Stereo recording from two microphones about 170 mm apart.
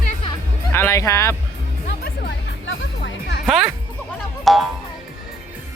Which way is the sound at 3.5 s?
Centre (ahead or behind).